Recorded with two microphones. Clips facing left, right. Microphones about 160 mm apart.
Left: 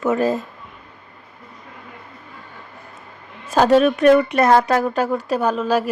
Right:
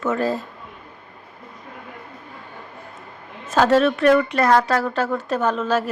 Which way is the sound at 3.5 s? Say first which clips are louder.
Left 2 dB; 15° left (ahead or behind).